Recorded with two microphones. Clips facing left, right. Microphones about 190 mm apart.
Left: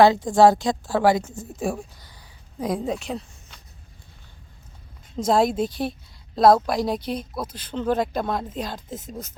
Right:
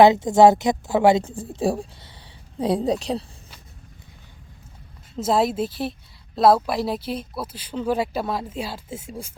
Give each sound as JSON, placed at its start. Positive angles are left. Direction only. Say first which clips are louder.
{"t": 0.0, "sound": "a woman's voice", "louder": "right 2 dB", "side_deg": -20}
{"t": 5.1, "sound": "a woman's voice", "louder": "left 1 dB", "side_deg": 0}